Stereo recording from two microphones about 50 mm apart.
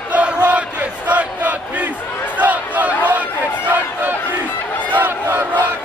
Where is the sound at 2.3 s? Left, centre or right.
Right.